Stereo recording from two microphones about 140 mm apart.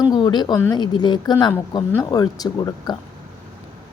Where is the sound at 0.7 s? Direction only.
30° left (ahead or behind).